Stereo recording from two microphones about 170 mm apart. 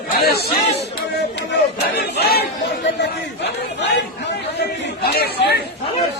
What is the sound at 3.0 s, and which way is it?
Speech, 90° left.